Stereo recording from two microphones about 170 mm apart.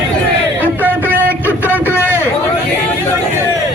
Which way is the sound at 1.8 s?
10° left (ahead or behind).